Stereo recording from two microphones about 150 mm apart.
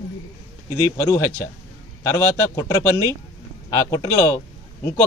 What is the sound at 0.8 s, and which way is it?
A man's voice, 20° left (ahead or behind).